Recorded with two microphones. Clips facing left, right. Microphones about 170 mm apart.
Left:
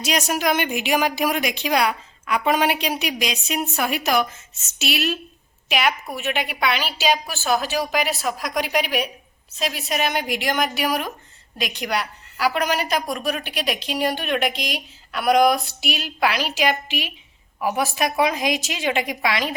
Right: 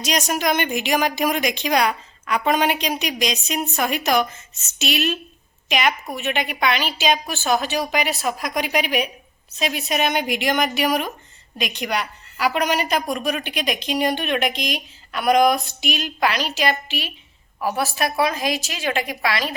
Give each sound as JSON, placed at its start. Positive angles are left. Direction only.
{"t": 0.0, "sound": "a woman's voice", "side_deg": 5}